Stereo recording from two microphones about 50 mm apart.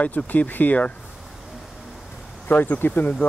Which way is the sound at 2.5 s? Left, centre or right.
Left.